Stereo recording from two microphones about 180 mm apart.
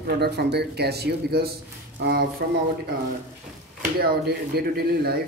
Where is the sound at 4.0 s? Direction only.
60° right (ahead or behind).